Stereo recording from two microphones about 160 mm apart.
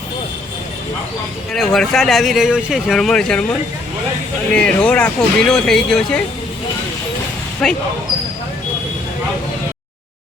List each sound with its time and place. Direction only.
1.5 s speech: centre (ahead or behind)
4.5 s speech: 5° left (ahead or behind)
7.6 s speech: 5° left (ahead or behind)